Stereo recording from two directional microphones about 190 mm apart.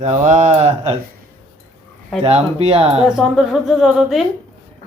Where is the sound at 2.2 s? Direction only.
35° right (ahead or behind).